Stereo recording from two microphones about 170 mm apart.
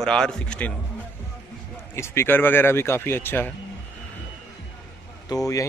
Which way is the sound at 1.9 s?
15° left (ahead or behind).